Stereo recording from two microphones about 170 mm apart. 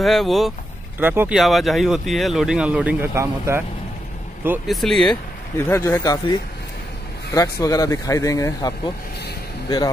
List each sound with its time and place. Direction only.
0.0 s speech: centre (ahead or behind)
0.9 s speech: 10° right (ahead or behind)
1.4 s speech: centre (ahead or behind)
4.6 s speech: centre (ahead or behind)
5.6 s speech: 15° left (ahead or behind)
7.3 s speech: 20° left (ahead or behind)